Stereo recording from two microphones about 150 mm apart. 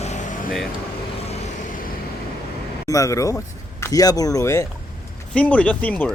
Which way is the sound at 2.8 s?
20° left (ahead or behind).